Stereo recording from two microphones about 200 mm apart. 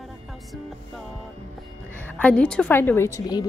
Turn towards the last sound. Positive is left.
turn(degrees=15)  # may be behind; listen again after turning